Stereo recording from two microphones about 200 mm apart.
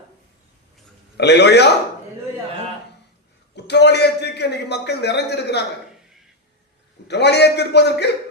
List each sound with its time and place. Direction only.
1.1 s a man's voice: 55° left (ahead or behind)
3.5 s a man's voice: 55° left (ahead or behind)
7.1 s a man's voice: 55° left (ahead or behind)